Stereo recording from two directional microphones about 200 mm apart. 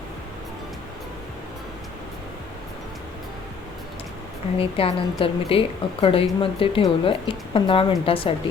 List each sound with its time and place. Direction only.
4.5 s a woman's voice: 30° left (ahead or behind)